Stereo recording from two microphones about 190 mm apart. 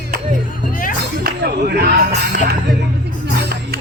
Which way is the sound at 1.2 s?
55° right (ahead or behind).